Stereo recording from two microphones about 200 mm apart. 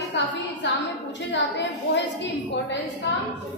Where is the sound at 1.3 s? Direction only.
60° left (ahead or behind).